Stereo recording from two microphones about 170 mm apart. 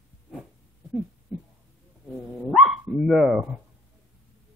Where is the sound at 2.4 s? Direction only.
Centre (ahead or behind).